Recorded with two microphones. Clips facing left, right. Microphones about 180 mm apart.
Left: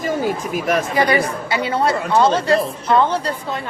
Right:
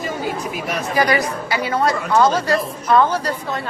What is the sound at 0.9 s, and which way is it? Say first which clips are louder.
Speech: left 1 dB; 25° left (ahead or behind).